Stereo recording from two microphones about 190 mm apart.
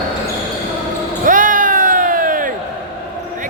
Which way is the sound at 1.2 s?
45° right (ahead or behind).